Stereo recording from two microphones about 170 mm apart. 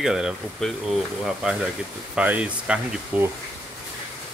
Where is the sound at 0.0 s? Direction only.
5° right (ahead or behind).